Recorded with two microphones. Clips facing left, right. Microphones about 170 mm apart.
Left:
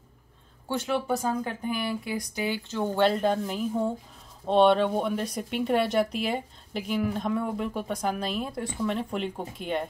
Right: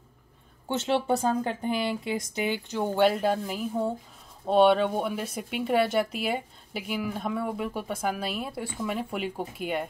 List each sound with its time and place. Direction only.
0.7 s speech: 25° right (ahead or behind); by 9.8 s 5° right (ahead or behind)